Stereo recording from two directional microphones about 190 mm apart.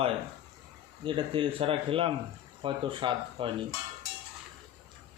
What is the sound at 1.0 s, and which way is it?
Speech, 25° right (ahead or behind).